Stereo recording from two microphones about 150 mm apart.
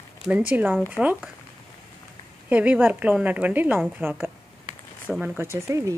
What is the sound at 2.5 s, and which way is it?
A woman's voice, 10° right (ahead or behind).